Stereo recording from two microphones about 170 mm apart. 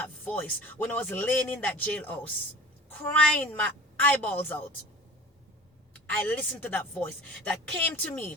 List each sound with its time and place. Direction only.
0.3 s a woman's voice: 10° left (ahead or behind)
6.1 s a woman's voice: 10° left (ahead or behind)